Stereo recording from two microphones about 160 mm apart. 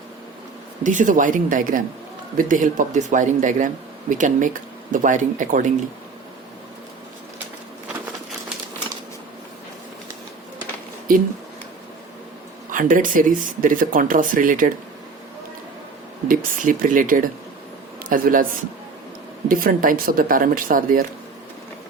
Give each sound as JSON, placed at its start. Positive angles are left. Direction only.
{"t": 0.9, "sound": "speech", "side_deg": -55}
{"t": 11.1, "sound": "speech", "side_deg": -60}
{"t": 12.7, "sound": "speech", "side_deg": -55}
{"t": 16.3, "sound": "speech", "side_deg": -60}
{"t": 19.5, "sound": "speech", "side_deg": -60}